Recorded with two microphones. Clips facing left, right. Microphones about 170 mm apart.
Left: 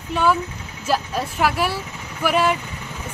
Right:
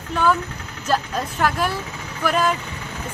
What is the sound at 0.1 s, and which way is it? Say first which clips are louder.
Speech: even; 5° left (ahead or behind).